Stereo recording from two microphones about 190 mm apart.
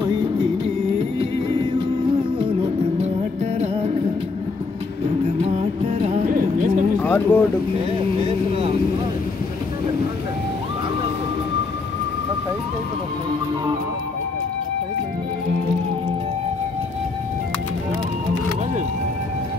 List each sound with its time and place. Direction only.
3.5 s music: 30° right (ahead or behind)
5.4 s music: 35° right (ahead or behind)
7.0 s a sound: 10° left (ahead or behind)
7.9 s vehicle: 30° right (ahead or behind)